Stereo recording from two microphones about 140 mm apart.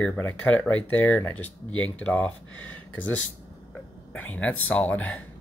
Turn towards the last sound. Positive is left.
turn(degrees=10)  # may be behind; listen again after turning